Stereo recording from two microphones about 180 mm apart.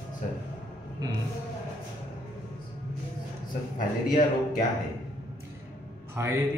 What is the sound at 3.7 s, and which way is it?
Speech, 45° left (ahead or behind).